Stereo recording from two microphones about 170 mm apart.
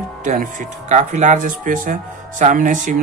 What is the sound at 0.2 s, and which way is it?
Speech, 50° right (ahead or behind).